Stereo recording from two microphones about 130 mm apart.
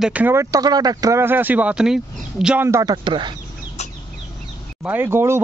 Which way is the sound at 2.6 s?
20° right (ahead or behind).